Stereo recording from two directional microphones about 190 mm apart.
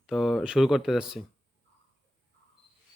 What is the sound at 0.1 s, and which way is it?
Speech, centre (ahead or behind).